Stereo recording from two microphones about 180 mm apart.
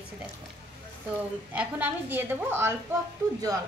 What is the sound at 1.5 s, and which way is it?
A woman's voice, 10° right (ahead or behind).